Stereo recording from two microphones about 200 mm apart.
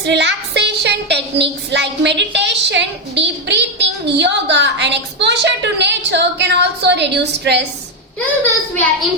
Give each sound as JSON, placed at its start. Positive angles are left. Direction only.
{"t": 0.0, "sound": "a woman's voice", "side_deg": -60}
{"t": 8.7, "sound": "a woman's voice", "side_deg": 5}